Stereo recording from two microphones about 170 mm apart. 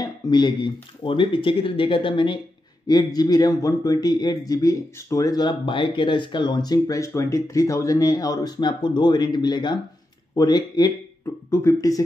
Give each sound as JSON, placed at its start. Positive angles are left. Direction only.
{"t": 0.0, "sound": "speech", "side_deg": 25}